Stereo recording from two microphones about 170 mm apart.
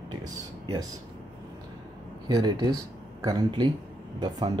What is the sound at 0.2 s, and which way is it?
Speech, 25° right (ahead or behind).